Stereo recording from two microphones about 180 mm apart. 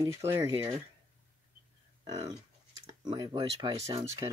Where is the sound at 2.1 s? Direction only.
20° right (ahead or behind).